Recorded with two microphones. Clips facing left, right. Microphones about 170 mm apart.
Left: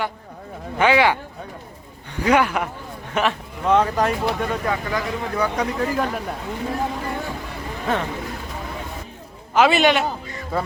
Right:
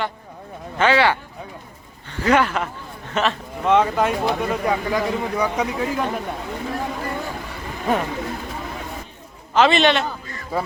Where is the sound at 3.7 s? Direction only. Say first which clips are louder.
Right 1 dB; centre (ahead or behind).